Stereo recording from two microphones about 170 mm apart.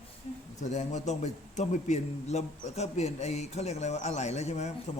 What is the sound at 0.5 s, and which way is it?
A man's voice, 45° left (ahead or behind).